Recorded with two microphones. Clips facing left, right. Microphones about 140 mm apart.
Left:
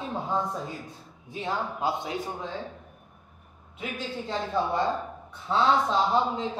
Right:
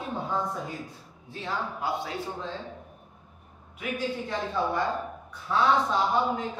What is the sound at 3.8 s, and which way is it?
Speech, 25° left (ahead or behind).